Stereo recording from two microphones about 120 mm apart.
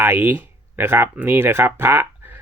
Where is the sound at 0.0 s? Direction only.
15° right (ahead or behind).